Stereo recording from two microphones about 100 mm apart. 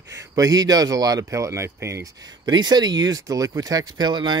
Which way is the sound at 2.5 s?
45° right (ahead or behind).